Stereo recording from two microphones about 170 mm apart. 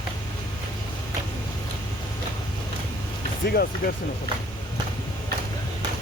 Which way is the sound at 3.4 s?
65° left (ahead or behind).